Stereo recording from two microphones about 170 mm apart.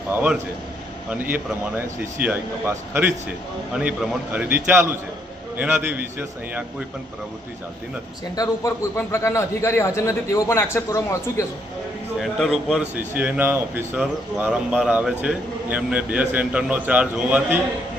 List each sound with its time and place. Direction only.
0.1 s a man's voice: 10° right (ahead or behind)
8.4 s a man's voice: 15° left (ahead or behind)
12.2 s speech: centre (ahead or behind)